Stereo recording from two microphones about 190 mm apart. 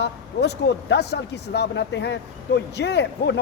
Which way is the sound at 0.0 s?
60° left (ahead or behind).